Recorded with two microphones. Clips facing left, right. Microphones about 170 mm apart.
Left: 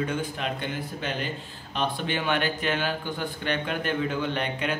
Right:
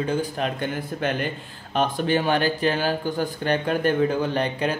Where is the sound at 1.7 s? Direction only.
40° right (ahead or behind).